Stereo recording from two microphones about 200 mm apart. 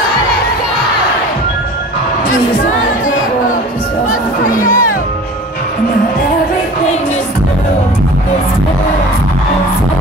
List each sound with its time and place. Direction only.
4.5 s music: 45° left (ahead or behind)